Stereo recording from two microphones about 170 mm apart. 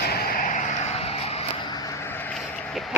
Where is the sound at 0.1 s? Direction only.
60° left (ahead or behind); by 1.7 s 35° left (ahead or behind).